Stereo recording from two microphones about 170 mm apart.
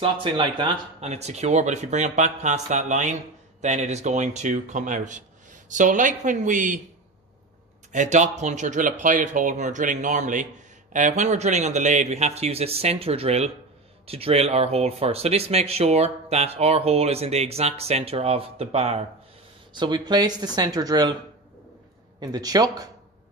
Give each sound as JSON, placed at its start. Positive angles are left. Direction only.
{"t": 0.0, "sound": "speech", "side_deg": -30}
{"t": 1.1, "sound": "speech", "side_deg": -40}
{"t": 7.9, "sound": "speech", "side_deg": -45}
{"t": 19.7, "sound": "speech", "side_deg": -25}
{"t": 22.2, "sound": "speech", "side_deg": -25}